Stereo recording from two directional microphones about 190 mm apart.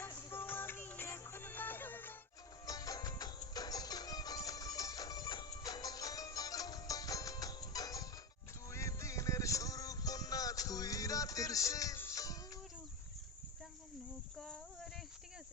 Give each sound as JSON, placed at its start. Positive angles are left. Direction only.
{"t": 0.0, "sound": "music", "side_deg": 15}
{"t": 14.3, "sound": "insect", "side_deg": 5}